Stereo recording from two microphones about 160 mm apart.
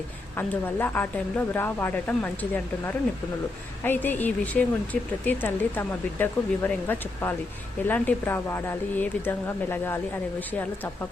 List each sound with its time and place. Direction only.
0.3 s speech: 15° left (ahead or behind)